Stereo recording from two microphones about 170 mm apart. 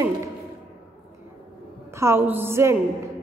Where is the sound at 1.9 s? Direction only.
15° right (ahead or behind).